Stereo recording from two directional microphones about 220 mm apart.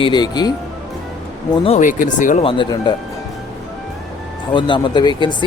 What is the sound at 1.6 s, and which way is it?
Speech, 30° left (ahead or behind).